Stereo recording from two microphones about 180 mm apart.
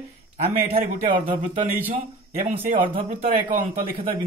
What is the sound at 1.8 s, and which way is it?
Speech, 35° right (ahead or behind).